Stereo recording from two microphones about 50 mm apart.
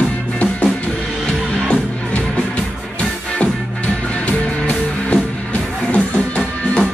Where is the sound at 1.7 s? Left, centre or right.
Left.